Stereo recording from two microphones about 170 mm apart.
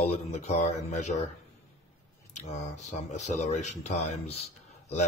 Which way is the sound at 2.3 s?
40° left (ahead or behind).